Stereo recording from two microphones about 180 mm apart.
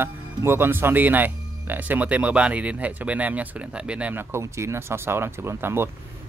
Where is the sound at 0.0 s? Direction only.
15° right (ahead or behind).